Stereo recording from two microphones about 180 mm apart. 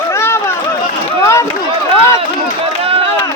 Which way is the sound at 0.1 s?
15° left (ahead or behind).